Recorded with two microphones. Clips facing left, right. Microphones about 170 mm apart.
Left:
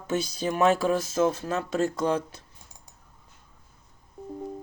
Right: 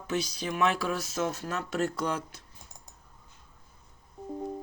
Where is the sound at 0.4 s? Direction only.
40° left (ahead or behind).